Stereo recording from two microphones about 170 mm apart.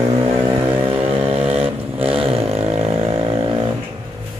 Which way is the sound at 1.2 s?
35° right (ahead or behind).